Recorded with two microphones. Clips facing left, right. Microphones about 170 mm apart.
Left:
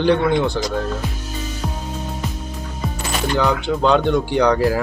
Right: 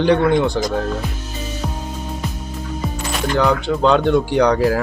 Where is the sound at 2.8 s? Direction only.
Centre (ahead or behind).